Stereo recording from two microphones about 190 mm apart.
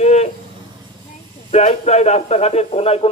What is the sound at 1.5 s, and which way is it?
A man's voice, 35° left (ahead or behind).